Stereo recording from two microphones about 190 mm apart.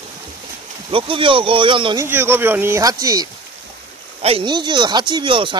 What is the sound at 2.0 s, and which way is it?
Speech, 10° right (ahead or behind).